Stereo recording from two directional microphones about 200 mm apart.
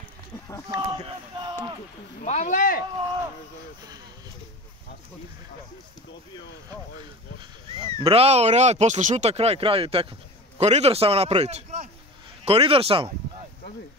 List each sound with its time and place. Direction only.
0.7 s speech: 20° right (ahead or behind)
2.2 s speech: 35° left (ahead or behind)
8.0 s speech: 30° right (ahead or behind)